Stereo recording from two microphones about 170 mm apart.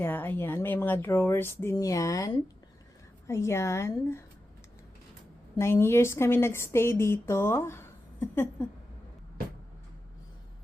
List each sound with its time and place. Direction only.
0.0 s speech: 10° left (ahead or behind)
5.5 s speech: 15° left (ahead or behind)